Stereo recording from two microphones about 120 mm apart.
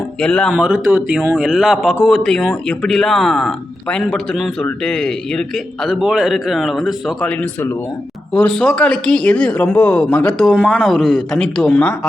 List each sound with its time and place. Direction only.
0.2 s speech: 10° left (ahead or behind)
0.5 s a man's voice: 10° right (ahead or behind)
7.3 s speech: 20° left (ahead or behind)
10.4 s a man's voice: centre (ahead or behind)